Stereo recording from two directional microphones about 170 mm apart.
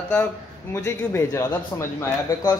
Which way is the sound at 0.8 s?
15° left (ahead or behind).